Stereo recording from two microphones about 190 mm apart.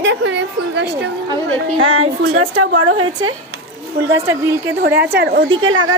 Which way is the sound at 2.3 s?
90° right.